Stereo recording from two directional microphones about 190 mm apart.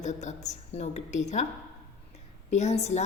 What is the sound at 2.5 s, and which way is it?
Speech, 35° left (ahead or behind).